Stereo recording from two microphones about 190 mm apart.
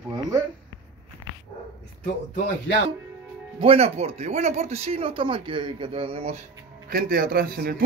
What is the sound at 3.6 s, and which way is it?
Speech, 30° right (ahead or behind).